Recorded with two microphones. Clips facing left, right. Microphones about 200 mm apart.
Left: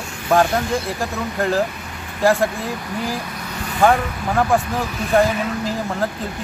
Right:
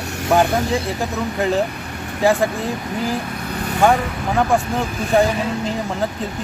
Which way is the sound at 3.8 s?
Centre (ahead or behind).